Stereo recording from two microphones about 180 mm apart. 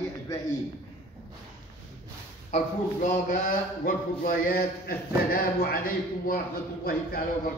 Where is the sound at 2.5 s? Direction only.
40° left (ahead or behind).